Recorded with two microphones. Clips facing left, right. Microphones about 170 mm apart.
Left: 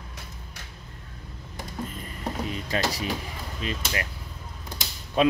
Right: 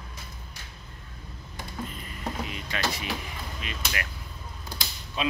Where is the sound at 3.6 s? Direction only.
35° left (ahead or behind).